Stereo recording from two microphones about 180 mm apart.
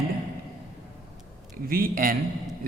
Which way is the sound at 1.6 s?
55° right (ahead or behind).